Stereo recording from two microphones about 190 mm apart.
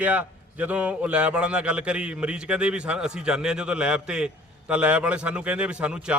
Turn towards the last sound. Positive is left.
turn(degrees=-5)  # may be behind; listen again after turning